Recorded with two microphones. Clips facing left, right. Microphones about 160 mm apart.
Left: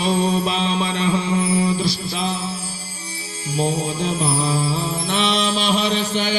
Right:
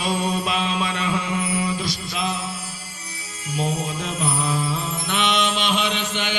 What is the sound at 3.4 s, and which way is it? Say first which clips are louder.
Music: left 4 dB; 30° left (ahead or behind).